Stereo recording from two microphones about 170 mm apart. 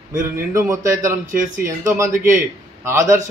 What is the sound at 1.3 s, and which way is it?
Speech, 50° right (ahead or behind).